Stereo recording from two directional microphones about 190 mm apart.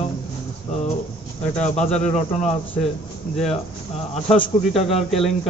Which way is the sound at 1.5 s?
35° left (ahead or behind).